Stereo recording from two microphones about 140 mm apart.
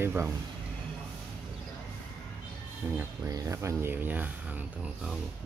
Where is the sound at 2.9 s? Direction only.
20° right (ahead or behind).